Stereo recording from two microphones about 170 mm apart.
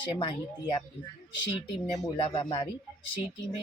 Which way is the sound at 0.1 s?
30° left (ahead or behind).